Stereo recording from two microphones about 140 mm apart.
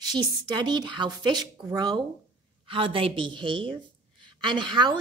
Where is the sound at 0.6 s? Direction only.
30° right (ahead or behind).